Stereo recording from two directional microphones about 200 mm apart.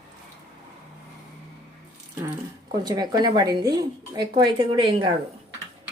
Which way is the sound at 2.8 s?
20° right (ahead or behind).